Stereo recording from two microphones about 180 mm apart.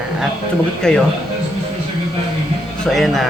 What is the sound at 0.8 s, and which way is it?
Speech, 5° left (ahead or behind).